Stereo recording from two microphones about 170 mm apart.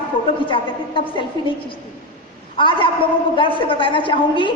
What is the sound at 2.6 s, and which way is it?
A woman's voice, 30° left (ahead or behind).